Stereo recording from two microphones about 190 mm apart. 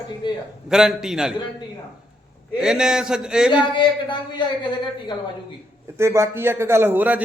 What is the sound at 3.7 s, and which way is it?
Speech, 25° left (ahead or behind).